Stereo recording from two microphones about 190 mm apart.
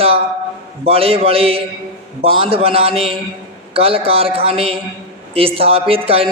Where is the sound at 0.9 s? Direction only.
30° right (ahead or behind).